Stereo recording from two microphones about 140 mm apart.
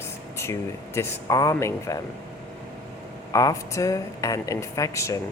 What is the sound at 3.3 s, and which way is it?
Speech, 25° left (ahead or behind).